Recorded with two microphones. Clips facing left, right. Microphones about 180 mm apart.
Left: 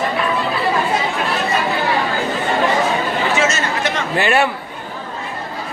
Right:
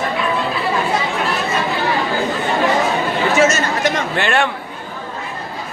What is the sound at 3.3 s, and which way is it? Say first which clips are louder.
Chatter: right 3 dB; 40° right (ahead or behind).